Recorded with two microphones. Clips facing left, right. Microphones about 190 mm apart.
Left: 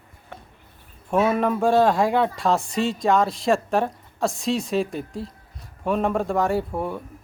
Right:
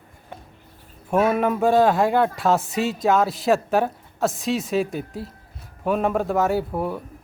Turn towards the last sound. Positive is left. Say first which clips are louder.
# right 1 dB
turn(degrees=-5)  # may be behind; listen again after turning